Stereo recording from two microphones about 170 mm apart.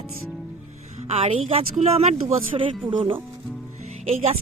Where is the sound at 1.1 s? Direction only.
35° right (ahead or behind).